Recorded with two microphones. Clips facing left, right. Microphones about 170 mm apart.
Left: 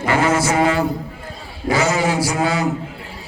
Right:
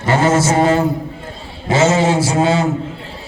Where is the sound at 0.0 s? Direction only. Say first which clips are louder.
Right 3 dB; 25° right (ahead or behind).